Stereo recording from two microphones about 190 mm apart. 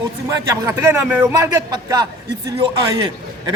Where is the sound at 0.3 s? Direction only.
15° right (ahead or behind).